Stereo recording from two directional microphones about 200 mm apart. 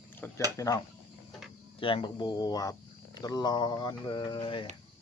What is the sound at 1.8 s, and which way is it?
Speech, 25° left (ahead or behind).